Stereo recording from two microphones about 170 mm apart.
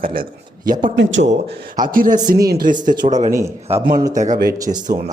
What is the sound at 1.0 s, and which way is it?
Speech, 90° right.